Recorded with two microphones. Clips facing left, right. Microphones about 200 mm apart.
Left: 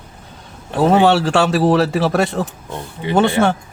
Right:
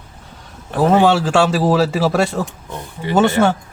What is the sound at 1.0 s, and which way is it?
Speech, centre (ahead or behind).